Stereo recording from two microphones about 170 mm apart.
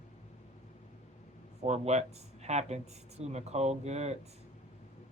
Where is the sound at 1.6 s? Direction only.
40° right (ahead or behind).